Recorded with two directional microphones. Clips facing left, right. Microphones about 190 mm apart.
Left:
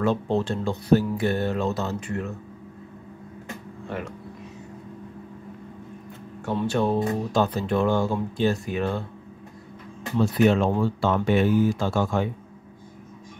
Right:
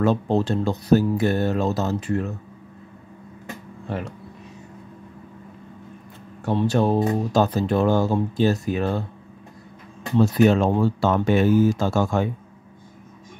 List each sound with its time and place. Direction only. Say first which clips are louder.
0.0 s speech: right 3 dB; 40° right (ahead or behind)
6.4 s speech: right 3 dB; 40° right (ahead or behind)
10.2 s speech: right 2 dB; 40° right (ahead or behind)